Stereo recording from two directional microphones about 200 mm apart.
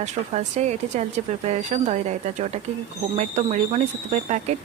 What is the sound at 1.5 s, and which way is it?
A woman's voice, 35° right (ahead or behind).